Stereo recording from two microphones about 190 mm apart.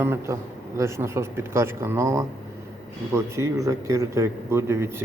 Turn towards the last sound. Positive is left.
turn(degrees=-15)  # may be behind; listen again after turning